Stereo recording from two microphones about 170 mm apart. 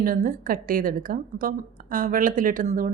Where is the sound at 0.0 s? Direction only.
55° right (ahead or behind).